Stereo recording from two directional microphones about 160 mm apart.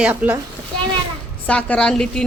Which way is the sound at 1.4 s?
5° left (ahead or behind).